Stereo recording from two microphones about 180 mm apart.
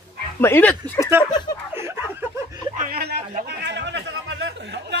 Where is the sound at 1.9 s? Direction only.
15° right (ahead or behind).